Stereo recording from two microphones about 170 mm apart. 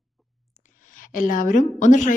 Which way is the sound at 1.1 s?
55° left (ahead or behind).